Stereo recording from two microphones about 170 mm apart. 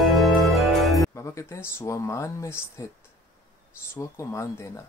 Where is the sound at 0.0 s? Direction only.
Centre (ahead or behind).